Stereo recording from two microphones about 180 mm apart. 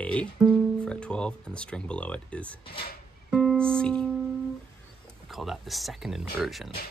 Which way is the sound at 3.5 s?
5° left (ahead or behind).